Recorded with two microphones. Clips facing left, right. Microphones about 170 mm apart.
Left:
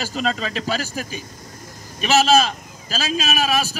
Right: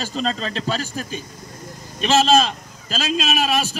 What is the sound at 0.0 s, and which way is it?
A man's voice, 5° left (ahead or behind).